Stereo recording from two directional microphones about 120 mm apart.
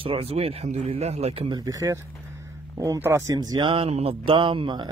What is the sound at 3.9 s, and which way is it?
Speech, 55° right (ahead or behind).